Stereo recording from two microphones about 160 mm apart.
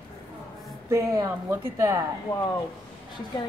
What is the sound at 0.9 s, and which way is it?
Speech, 15° right (ahead or behind).